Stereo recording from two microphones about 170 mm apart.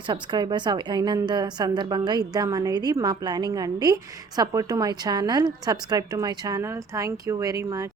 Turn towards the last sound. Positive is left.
turn(degrees=-20)  # may be behind; listen again after turning